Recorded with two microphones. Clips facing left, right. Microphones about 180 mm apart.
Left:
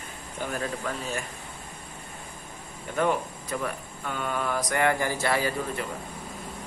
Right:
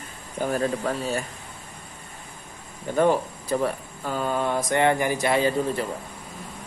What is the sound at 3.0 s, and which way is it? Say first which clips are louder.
Speech: right 5 dB; 30° right (ahead or behind).